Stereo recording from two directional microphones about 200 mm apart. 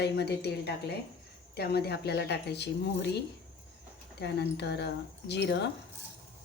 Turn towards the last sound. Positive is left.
turn(degrees=55)  # may be behind; listen again after turning